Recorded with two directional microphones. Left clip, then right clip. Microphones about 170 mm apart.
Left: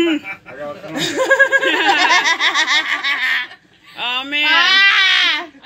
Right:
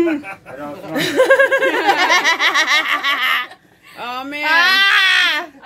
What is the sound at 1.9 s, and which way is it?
Laughter, 55° right (ahead or behind).